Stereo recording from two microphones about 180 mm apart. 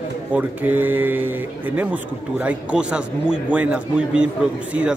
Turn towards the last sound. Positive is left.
turn(degrees=-5)  # may be behind; listen again after turning